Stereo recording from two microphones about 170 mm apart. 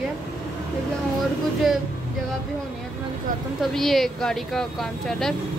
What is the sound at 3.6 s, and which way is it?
Speech, centre (ahead or behind).